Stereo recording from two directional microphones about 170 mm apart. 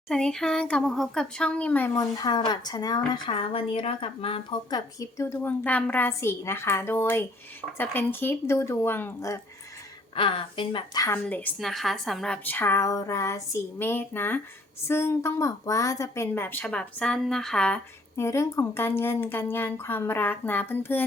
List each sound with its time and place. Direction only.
0.1 s speech: 5° left (ahead or behind); by 4.8 s 30° left (ahead or behind)
4.9 s speech: 15° left (ahead or behind)
10.2 s speech: 30° left (ahead or behind)
11.3 s speech: 10° left (ahead or behind)
18.2 s speech: 15° left (ahead or behind)